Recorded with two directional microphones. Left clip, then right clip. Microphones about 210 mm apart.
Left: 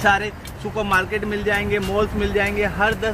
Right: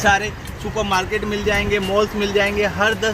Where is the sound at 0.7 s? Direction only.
45° right (ahead or behind).